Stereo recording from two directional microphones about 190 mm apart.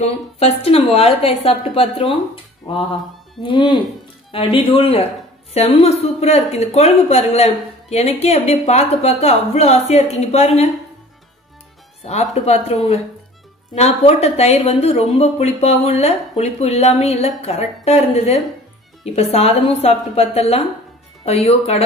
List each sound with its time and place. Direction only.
0.0 s speech: 35° left (ahead or behind)
3.4 s speech: 25° left (ahead or behind)
12.0 s speech: 35° left (ahead or behind)